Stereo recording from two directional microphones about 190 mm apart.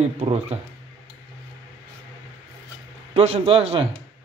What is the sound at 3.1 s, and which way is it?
Speech, 30° right (ahead or behind).